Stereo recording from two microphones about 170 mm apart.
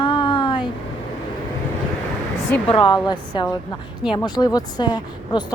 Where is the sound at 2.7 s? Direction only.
25° left (ahead or behind).